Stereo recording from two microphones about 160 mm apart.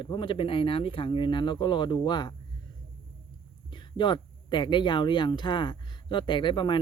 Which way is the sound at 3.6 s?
30° left (ahead or behind).